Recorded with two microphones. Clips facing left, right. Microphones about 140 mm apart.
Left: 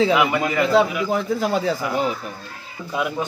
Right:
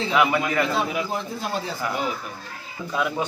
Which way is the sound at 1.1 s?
90° left.